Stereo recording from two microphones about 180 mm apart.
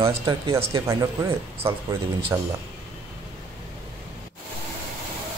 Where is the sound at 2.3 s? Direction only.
20° right (ahead or behind).